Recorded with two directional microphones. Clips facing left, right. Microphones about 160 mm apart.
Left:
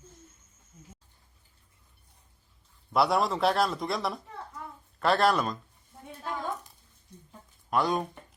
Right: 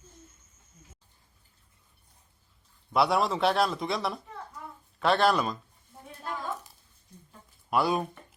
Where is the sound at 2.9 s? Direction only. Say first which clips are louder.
Even; centre (ahead or behind).